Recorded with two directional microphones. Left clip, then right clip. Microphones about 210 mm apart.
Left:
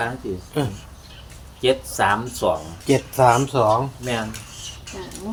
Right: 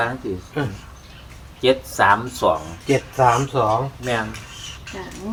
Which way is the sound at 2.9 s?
50° left (ahead or behind).